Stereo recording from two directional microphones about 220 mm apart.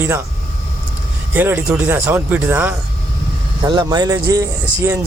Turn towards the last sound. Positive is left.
turn(degrees=-15)  # may be behind; listen again after turning